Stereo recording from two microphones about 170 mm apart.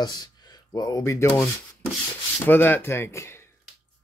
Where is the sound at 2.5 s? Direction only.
10° left (ahead or behind).